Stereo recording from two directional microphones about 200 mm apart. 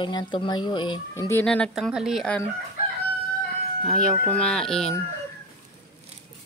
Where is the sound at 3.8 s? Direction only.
5° left (ahead or behind).